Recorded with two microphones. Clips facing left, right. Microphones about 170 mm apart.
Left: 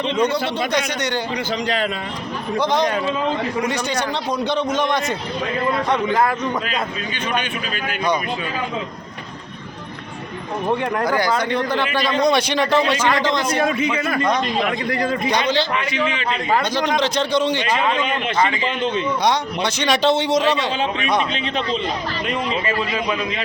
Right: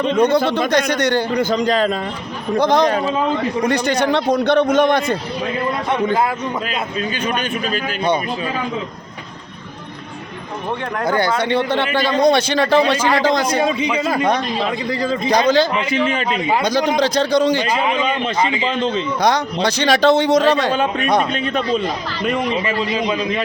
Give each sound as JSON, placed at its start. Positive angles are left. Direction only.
{"t": 0.0, "sound": "a man's voice", "side_deg": -50}
{"t": 3.7, "sound": "a man's voice", "side_deg": -60}
{"t": 6.1, "sound": "speech", "side_deg": -10}
{"t": 11.0, "sound": "a man's voice", "side_deg": -25}
{"t": 13.7, "sound": "speech", "side_deg": -20}
{"t": 14.3, "sound": "speech", "side_deg": -30}
{"t": 15.3, "sound": "a man's voice", "side_deg": -40}
{"t": 17.0, "sound": "a man's voice", "side_deg": -35}
{"t": 18.3, "sound": "speech", "side_deg": -20}
{"t": 18.8, "sound": "a man's voice", "side_deg": -40}